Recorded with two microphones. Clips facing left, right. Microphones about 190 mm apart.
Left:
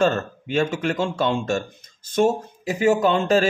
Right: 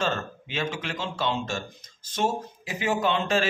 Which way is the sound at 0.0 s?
45° left (ahead or behind).